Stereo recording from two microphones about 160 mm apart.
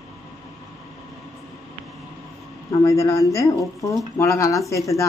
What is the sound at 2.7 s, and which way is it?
Speech, 20° left (ahead or behind).